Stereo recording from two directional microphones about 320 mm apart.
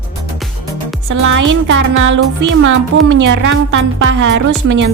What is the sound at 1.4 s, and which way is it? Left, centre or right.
Speech, right.